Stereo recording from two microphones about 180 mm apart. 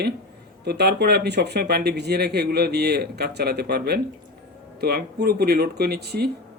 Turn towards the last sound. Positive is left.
turn(degrees=-60)  # may be behind; listen again after turning